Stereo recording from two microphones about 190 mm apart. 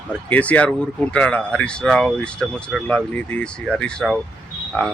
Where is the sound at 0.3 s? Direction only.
5° left (ahead or behind).